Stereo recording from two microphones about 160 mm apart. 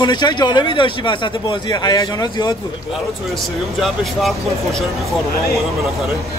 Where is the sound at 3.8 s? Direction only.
Centre (ahead or behind).